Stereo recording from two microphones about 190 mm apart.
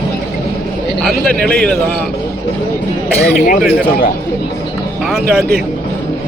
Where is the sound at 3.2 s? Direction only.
45° left (ahead or behind).